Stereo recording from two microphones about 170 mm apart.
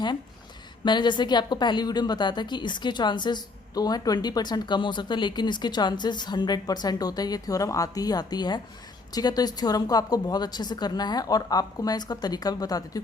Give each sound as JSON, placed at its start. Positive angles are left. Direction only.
{"t": 0.9, "sound": "a woman's voice", "side_deg": 25}